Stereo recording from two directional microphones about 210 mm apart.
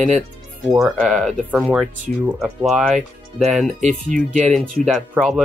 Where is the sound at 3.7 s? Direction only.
35° right (ahead or behind).